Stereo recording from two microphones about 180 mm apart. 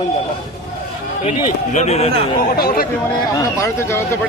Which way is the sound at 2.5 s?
55° left (ahead or behind).